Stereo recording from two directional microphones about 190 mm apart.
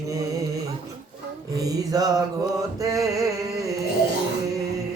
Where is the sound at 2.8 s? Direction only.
15° right (ahead or behind).